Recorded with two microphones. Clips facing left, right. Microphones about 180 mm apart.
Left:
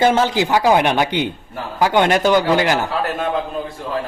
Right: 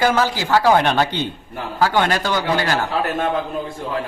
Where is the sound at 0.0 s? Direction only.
25° left (ahead or behind).